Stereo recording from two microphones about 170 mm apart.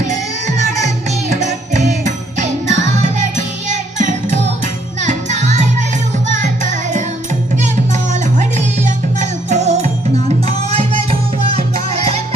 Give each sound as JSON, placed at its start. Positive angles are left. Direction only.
{"t": 0.0, "sound": "music", "side_deg": -45}
{"t": 8.1, "sound": "music", "side_deg": -45}